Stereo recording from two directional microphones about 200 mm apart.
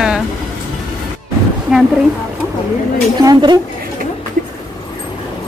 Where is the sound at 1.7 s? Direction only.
Centre (ahead or behind).